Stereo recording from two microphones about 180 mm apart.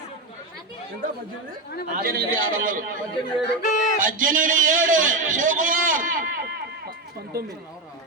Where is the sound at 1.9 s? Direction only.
55° right (ahead or behind).